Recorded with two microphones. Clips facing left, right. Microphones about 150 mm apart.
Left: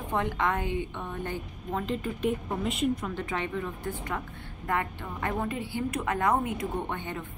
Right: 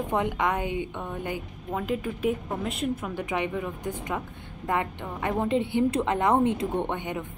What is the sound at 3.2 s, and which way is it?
A woman's voice, 15° right (ahead or behind).